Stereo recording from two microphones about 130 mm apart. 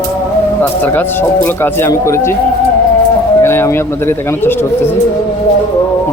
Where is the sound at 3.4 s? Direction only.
20° left (ahead or behind).